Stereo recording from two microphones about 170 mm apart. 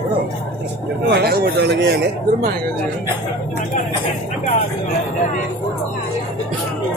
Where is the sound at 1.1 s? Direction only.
65° right (ahead or behind).